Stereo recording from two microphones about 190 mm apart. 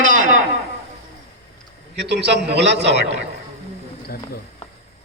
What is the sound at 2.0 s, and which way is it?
A man's voice, 65° right (ahead or behind).